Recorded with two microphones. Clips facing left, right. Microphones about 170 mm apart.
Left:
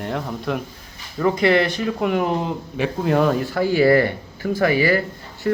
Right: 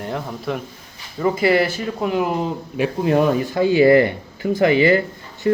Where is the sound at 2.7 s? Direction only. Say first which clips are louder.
Right 2 dB; 15° right (ahead or behind).